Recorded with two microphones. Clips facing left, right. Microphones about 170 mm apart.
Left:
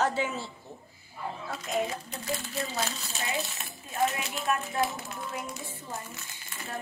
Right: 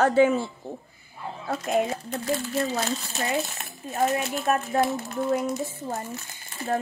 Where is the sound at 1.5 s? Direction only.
55° right (ahead or behind).